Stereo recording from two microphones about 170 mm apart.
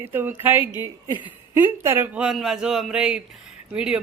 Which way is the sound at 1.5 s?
10° right (ahead or behind).